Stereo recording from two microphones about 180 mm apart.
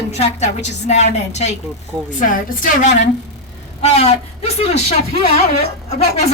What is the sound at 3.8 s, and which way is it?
A woman's voice, 35° left (ahead or behind).